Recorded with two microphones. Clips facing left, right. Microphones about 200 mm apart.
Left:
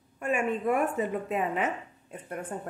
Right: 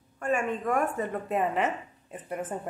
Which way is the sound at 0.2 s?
5° left (ahead or behind).